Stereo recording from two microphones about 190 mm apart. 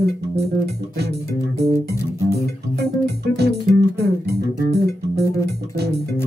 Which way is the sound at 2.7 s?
60° right (ahead or behind).